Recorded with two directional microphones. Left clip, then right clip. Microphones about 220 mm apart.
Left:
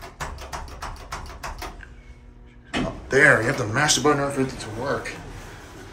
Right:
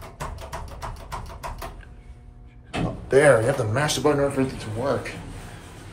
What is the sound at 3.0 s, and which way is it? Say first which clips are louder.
Speech: even; centre (ahead or behind).